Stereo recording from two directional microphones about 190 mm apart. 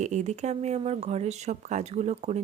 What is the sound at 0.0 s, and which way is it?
Speech, 40° right (ahead or behind).